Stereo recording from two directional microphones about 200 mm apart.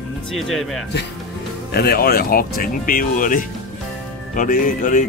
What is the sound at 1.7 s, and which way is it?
Speech, 50° left (ahead or behind).